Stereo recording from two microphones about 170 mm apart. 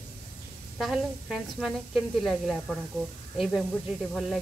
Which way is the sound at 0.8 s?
Centre (ahead or behind).